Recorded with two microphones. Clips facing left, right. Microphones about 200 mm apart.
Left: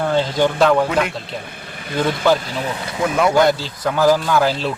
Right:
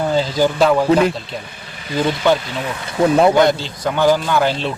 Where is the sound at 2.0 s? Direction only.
Centre (ahead or behind).